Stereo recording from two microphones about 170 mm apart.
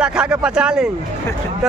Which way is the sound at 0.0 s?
5° right (ahead or behind).